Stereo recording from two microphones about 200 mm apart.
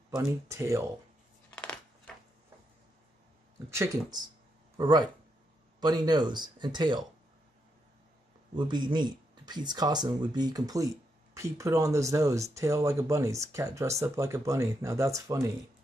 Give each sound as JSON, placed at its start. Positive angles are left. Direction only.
{"t": 0.1, "sound": "speech", "side_deg": -15}
{"t": 1.5, "sound": "a sound", "side_deg": 5}
{"t": 3.7, "sound": "speech", "side_deg": -15}
{"t": 8.5, "sound": "speech", "side_deg": -20}